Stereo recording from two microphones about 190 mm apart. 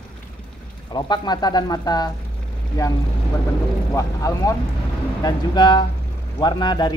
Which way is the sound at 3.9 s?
15° left (ahead or behind).